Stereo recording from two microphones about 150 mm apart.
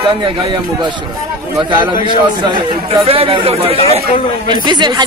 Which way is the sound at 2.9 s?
40° right (ahead or behind).